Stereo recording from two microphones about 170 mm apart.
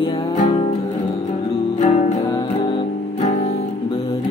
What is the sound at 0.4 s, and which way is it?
Music, 35° left (ahead or behind).